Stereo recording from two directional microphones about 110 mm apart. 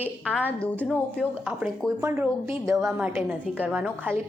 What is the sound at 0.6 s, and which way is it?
Speech, 10° left (ahead or behind).